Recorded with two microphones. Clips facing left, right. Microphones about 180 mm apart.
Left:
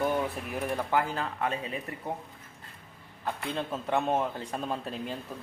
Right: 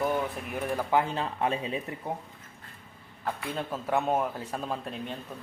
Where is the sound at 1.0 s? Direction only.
25° right (ahead or behind).